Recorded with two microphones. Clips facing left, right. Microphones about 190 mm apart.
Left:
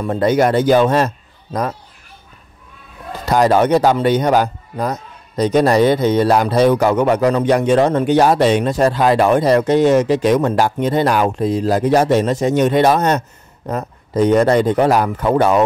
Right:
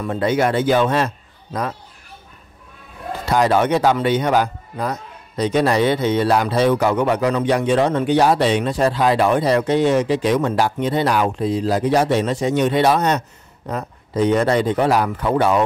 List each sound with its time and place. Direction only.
0.0 s a man's voice: 40° left (ahead or behind)
3.3 s a man's voice: 40° left (ahead or behind)